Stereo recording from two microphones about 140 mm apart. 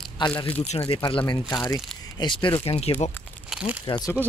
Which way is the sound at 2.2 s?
35° left (ahead or behind).